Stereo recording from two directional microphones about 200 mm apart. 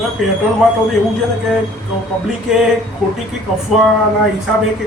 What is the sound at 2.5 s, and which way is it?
Speech, 5° right (ahead or behind).